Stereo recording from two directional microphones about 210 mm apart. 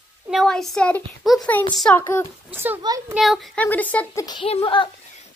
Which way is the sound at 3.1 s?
Centre (ahead or behind).